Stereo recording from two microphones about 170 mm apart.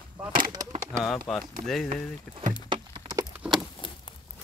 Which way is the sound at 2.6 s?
30° right (ahead or behind).